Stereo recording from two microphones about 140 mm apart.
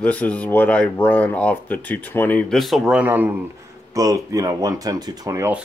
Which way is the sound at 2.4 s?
Centre (ahead or behind).